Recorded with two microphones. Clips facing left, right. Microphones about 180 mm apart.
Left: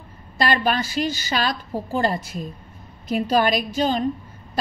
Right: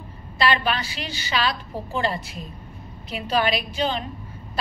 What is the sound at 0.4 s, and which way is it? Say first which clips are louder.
A woman's voice: left 2 dB; 45° left (ahead or behind).